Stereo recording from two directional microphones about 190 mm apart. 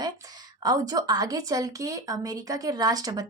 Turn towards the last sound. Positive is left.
turn(degrees=-20)  # may be behind; listen again after turning